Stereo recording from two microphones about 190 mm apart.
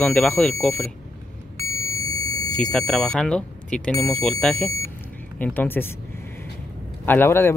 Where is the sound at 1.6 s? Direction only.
15° left (ahead or behind).